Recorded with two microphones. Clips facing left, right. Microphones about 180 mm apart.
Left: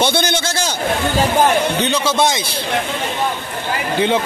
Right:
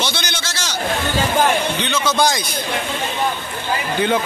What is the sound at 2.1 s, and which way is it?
Speech, 25° left (ahead or behind).